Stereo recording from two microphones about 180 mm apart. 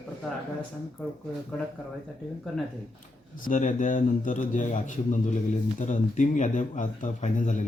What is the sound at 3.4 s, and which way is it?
Speech, 45° left (ahead or behind).